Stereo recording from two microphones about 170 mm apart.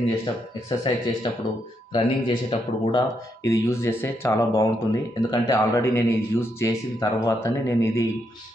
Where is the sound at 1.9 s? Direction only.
30° left (ahead or behind).